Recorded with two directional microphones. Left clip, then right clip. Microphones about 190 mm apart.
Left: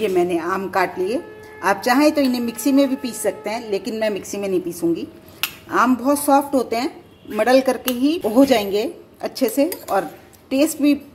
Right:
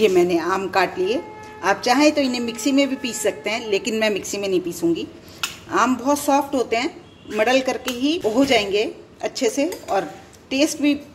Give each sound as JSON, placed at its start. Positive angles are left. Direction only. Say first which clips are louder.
{"t": 0.0, "sound": "a woman's voice", "louder": "right 2 dB", "side_deg": -5}